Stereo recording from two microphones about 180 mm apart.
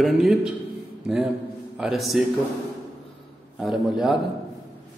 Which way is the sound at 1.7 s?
5° right (ahead or behind).